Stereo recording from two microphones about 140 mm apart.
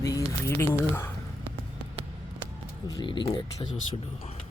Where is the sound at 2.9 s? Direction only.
30° left (ahead or behind).